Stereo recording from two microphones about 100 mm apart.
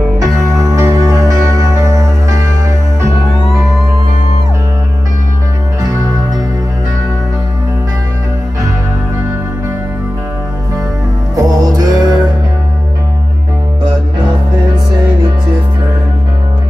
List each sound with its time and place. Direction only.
0.2 s music: 30° right (ahead or behind)
5.8 s music: 35° right (ahead or behind)
11.3 s music: 40° right (ahead or behind)